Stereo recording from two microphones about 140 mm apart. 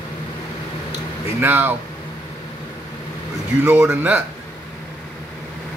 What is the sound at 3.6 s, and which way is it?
Speech, 10° right (ahead or behind).